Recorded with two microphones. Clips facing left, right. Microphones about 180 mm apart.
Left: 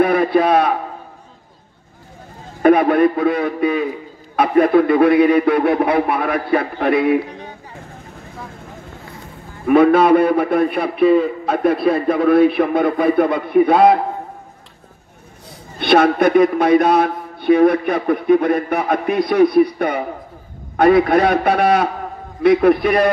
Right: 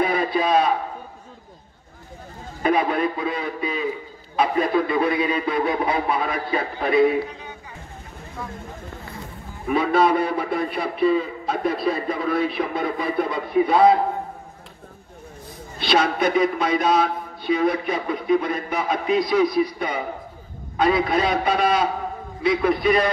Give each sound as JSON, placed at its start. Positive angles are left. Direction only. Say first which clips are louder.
{"t": 0.0, "sound": "a man's voice", "louder": "left 7 dB", "side_deg": 60}
{"t": 2.6, "sound": "a man's voice", "louder": "left 9 dB", "side_deg": 60}
{"t": 9.7, "sound": "a man's voice", "louder": "left 8 dB", "side_deg": 60}
{"t": 15.8, "sound": "a man's voice", "louder": "left 7 dB", "side_deg": 55}